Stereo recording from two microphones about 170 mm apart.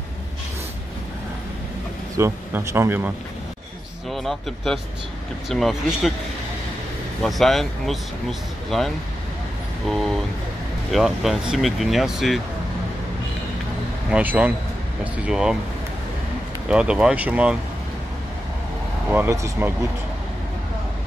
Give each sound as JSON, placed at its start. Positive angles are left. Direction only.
{"t": 2.1, "sound": "speech", "side_deg": -15}
{"t": 4.1, "sound": "speech", "side_deg": 0}
{"t": 7.2, "sound": "speech", "side_deg": 0}
{"t": 14.1, "sound": "speech", "side_deg": -10}
{"t": 16.6, "sound": "speech", "side_deg": -5}
{"t": 19.0, "sound": "speech", "side_deg": -10}